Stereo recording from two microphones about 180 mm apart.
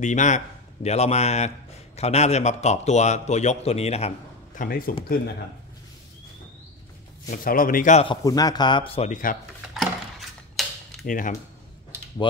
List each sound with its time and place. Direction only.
0.0 s a man's voice: 45° left (ahead or behind)
4.6 s speech: 55° left (ahead or behind)
7.2 s a man's voice: 50° left (ahead or behind)
8.0 s speech: 25° left (ahead or behind)
10.6 s a sound: centre (ahead or behind)
11.1 s a man's voice: 50° left (ahead or behind)